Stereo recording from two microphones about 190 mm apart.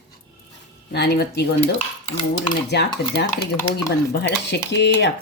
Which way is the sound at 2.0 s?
30° left (ahead or behind).